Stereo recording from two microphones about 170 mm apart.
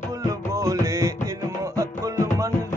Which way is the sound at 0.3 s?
20° right (ahead or behind).